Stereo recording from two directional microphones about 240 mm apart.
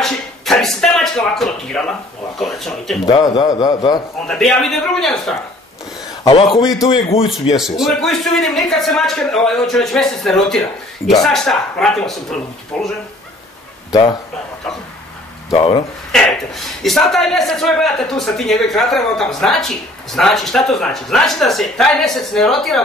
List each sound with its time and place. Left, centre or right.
0.0 s speech: centre
3.1 s a man's voice: centre
4.3 s a man's voice: centre
6.2 s a man's voice: centre
7.5 s a man's voice: centre
15.5 s speech: left
16.1 s a man's voice: centre